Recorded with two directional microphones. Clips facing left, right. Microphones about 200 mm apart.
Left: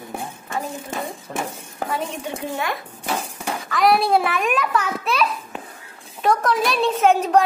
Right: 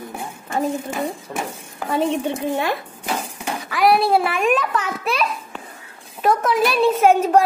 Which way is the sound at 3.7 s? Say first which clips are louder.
Right 1 dB; 5° right (ahead or behind).